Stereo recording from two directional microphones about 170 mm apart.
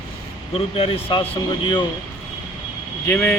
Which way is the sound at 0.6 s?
35° left (ahead or behind).